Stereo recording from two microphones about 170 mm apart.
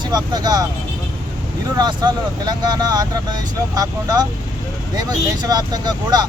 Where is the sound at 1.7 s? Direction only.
25° right (ahead or behind).